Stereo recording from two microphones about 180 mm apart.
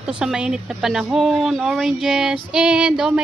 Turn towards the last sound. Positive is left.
turn(degrees=-5)  # may be behind; listen again after turning